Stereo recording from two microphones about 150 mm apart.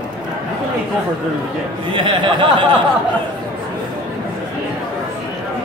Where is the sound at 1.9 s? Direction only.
35° right (ahead or behind).